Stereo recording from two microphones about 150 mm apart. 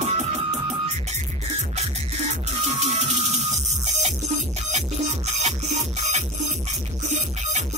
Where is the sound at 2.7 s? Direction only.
50° right (ahead or behind).